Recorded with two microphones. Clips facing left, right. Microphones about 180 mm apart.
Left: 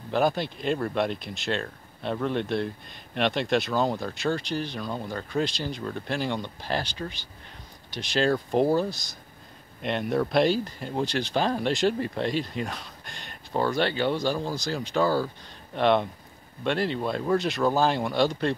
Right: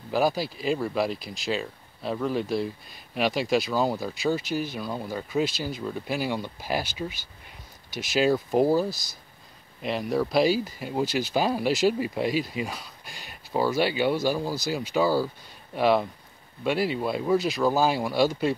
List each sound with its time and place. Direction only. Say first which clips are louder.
0.1 s speech: even; 5° right (ahead or behind)